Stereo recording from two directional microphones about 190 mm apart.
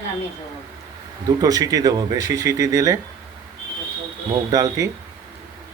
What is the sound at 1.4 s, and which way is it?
Speech, 20° right (ahead or behind).